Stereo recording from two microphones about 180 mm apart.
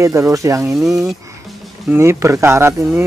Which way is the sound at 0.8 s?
Centre (ahead or behind).